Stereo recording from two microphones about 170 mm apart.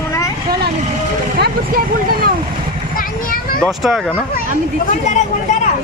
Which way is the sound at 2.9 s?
55° left (ahead or behind).